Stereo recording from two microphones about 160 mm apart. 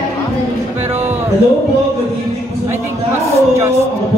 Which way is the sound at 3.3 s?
15° right (ahead or behind).